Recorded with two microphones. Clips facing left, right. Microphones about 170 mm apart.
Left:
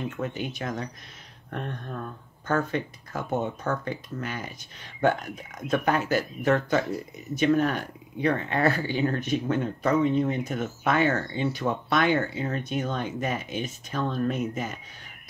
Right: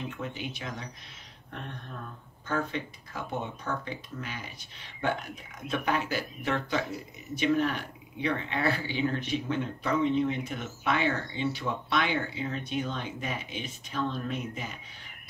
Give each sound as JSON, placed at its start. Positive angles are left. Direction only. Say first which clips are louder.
{"t": 0.2, "sound": "speech", "louder": "left 6 dB", "side_deg": 45}
{"t": 2.4, "sound": "speech", "louder": "left 5 dB", "side_deg": 45}
{"t": 5.7, "sound": "speech", "louder": "left 5 dB", "side_deg": 45}